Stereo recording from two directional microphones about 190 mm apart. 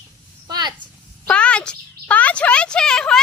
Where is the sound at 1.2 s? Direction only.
5° left (ahead or behind).